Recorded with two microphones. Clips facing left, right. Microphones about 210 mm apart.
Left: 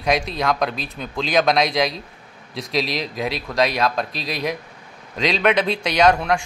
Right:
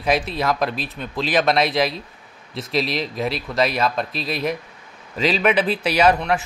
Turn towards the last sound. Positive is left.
turn(degrees=-5)  # may be behind; listen again after turning